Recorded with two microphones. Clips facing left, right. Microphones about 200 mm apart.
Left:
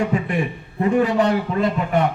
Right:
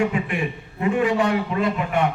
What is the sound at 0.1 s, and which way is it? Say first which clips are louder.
A man's voice: left 3 dB; 40° left (ahead or behind).